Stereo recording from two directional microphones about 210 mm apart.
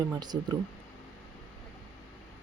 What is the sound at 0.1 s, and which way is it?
Speech, 20° right (ahead or behind).